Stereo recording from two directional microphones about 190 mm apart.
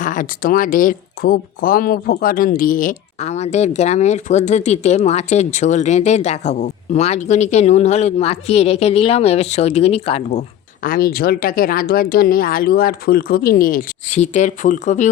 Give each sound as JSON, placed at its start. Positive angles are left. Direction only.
{"t": 0.0, "sound": "speech", "side_deg": 45}
{"t": 10.8, "sound": "speech", "side_deg": 50}